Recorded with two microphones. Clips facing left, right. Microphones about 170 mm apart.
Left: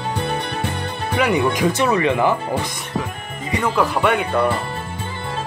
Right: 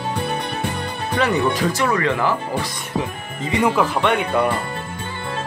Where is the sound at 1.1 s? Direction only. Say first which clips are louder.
Left 1 dB; 10° left (ahead or behind).